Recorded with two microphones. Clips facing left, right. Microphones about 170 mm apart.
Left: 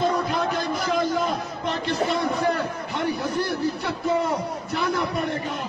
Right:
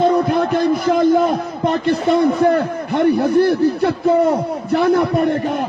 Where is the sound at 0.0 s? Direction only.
60° right (ahead or behind).